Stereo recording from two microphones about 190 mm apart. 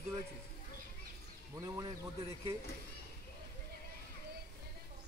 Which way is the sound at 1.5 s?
15° right (ahead or behind).